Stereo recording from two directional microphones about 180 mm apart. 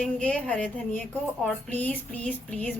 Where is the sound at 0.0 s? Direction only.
5° left (ahead or behind).